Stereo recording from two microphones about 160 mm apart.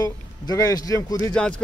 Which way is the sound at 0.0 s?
20° left (ahead or behind).